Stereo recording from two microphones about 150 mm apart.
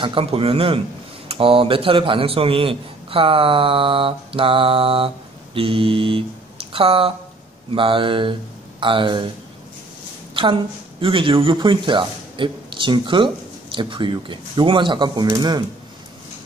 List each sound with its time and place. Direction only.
0.0 s a man's voice: 35° right (ahead or behind)
10.4 s a woman's voice: 35° right (ahead or behind)